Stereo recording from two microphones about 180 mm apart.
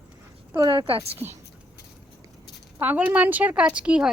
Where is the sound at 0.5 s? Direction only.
25° right (ahead or behind).